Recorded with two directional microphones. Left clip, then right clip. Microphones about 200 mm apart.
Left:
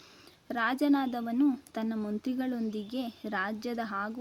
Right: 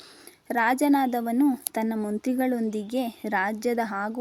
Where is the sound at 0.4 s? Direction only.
20° right (ahead or behind).